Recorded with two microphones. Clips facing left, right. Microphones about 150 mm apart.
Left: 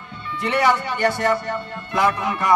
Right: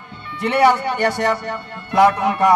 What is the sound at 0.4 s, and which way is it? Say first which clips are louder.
A man's voice: right 4 dB; 65° right (ahead or behind).